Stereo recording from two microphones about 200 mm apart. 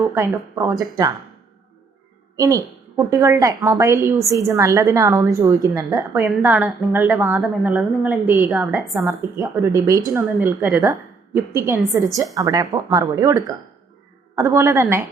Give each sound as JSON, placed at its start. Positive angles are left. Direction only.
{"t": 0.0, "sound": "a woman's voice", "side_deg": -10}
{"t": 2.3, "sound": "a woman's voice", "side_deg": -15}
{"t": 9.0, "sound": "a woman's voice", "side_deg": -15}
{"t": 10.2, "sound": "a woman's voice", "side_deg": -5}